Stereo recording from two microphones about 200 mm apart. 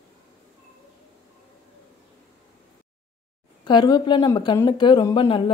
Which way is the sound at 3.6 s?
20° left (ahead or behind).